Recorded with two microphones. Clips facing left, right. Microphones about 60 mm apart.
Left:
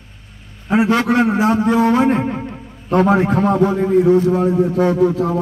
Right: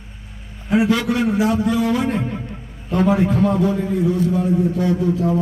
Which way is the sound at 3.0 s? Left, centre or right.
Left.